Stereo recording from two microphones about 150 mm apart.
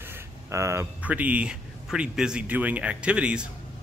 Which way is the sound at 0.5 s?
20° right (ahead or behind).